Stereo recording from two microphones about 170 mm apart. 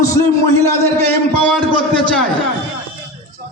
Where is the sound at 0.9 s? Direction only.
10° left (ahead or behind).